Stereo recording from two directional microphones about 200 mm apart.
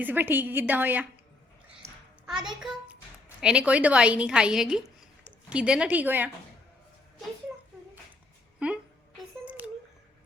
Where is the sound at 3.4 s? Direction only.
5° right (ahead or behind).